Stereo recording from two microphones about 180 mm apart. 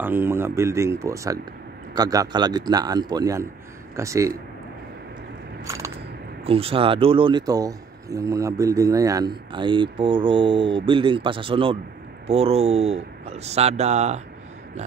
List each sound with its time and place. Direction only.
0.0 s speech: 10° right (ahead or behind)
5.6 s biting: 15° right (ahead or behind)
6.4 s speech: 30° right (ahead or behind)